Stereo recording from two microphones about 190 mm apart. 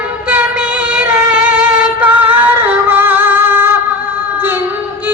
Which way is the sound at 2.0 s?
10° right (ahead or behind).